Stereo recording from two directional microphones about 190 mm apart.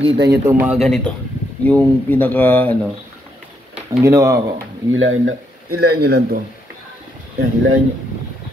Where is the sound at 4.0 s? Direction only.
15° right (ahead or behind).